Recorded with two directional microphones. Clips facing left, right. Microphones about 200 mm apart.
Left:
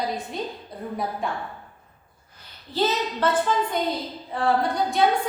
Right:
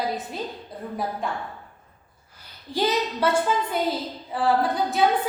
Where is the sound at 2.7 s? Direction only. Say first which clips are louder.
Even; 10° right (ahead or behind).